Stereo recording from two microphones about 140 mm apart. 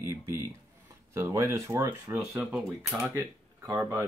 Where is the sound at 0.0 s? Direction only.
20° right (ahead or behind).